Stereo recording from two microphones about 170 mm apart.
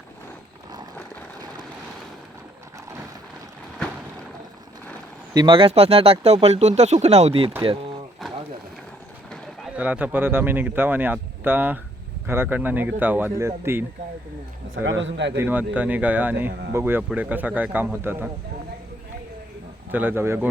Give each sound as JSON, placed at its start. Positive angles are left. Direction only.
{"t": 5.3, "sound": "speech", "side_deg": -30}
{"t": 9.7, "sound": "speech", "side_deg": -10}
{"t": 14.8, "sound": "speech", "side_deg": -90}
{"t": 15.4, "sound": "speech", "side_deg": -10}
{"t": 19.9, "sound": "speech", "side_deg": -10}